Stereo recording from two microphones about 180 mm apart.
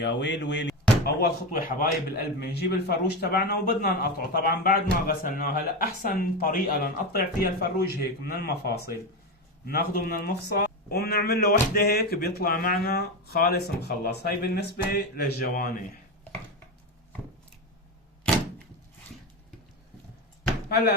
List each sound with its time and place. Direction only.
0.0 s speech: 75° left (ahead or behind)
1.5 s a man's voice: 50° left (ahead or behind)
2.4 s speech: 65° left (ahead or behind)
20.7 s speech: 65° left (ahead or behind)